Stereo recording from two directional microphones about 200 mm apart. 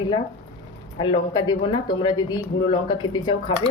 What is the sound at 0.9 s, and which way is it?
Speech, 25° left (ahead or behind).